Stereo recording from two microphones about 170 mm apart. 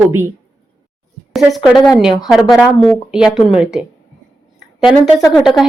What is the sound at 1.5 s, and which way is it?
Speech, centre (ahead or behind).